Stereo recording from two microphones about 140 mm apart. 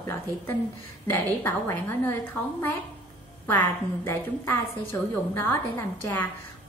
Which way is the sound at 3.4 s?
15° left (ahead or behind).